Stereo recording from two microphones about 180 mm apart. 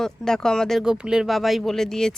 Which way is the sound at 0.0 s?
5° left (ahead or behind).